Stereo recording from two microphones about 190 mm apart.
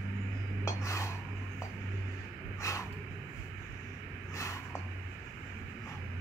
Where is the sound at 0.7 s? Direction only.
15° left (ahead or behind).